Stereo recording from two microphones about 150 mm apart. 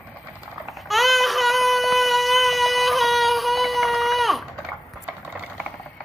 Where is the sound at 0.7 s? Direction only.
Centre (ahead or behind).